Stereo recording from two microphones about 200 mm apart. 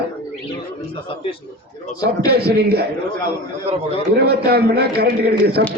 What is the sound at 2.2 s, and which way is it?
Speech, 55° right (ahead or behind).